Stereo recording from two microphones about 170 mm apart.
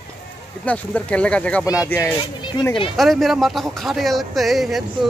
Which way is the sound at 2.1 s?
25° left (ahead or behind).